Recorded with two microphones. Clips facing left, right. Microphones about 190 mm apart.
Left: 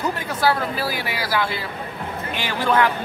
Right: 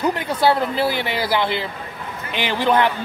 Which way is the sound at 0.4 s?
25° right (ahead or behind).